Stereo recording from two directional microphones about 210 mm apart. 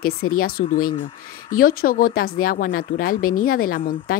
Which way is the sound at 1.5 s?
45° left (ahead or behind).